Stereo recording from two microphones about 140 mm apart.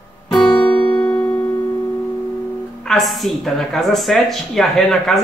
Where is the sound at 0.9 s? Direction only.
10° left (ahead or behind).